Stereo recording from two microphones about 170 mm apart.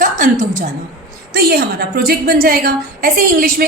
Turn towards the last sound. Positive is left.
turn(degrees=-60)  # may be behind; listen again after turning